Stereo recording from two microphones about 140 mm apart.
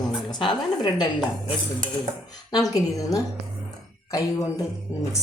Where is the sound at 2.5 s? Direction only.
25° left (ahead or behind).